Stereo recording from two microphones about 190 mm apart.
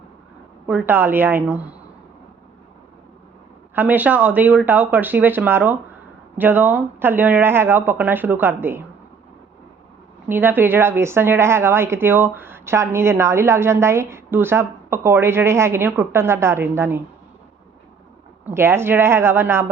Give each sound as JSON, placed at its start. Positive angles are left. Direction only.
{"t": 0.7, "sound": "speech", "side_deg": -10}
{"t": 3.8, "sound": "speech", "side_deg": -10}
{"t": 10.2, "sound": "speech", "side_deg": -10}
{"t": 18.4, "sound": "speech", "side_deg": -15}